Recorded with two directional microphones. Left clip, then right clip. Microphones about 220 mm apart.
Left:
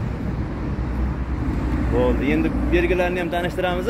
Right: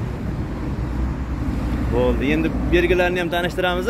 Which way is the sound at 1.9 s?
15° right (ahead or behind).